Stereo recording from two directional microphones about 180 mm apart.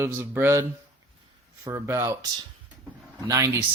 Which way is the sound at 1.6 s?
15° right (ahead or behind).